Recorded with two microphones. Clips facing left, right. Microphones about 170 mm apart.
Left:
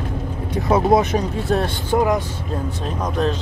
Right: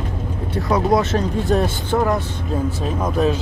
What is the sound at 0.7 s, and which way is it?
Speech, 20° left (ahead or behind).